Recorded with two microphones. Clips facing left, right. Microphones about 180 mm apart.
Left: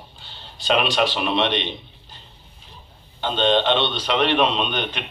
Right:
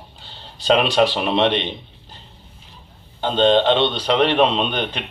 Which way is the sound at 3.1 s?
40° right (ahead or behind).